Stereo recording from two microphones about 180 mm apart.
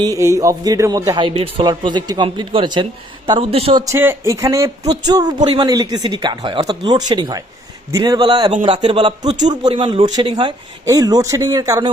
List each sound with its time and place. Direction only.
0.0 s speech: 15° right (ahead or behind)
3.8 s speech: 15° right (ahead or behind)